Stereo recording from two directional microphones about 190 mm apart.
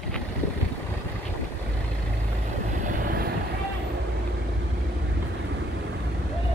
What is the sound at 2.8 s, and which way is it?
Vehicle, 50° right (ahead or behind).